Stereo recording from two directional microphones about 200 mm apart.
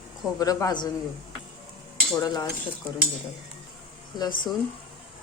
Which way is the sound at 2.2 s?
20° left (ahead or behind).